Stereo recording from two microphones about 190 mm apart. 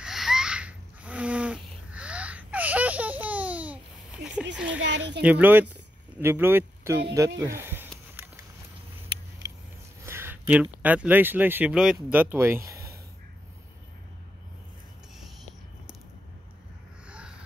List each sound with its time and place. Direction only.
0.0 s a sound: centre (ahead or behind)
4.7 s a child's voice: 70° right (ahead or behind)
5.2 s speech: 10° right (ahead or behind)
10.0 s speech: 10° right (ahead or behind)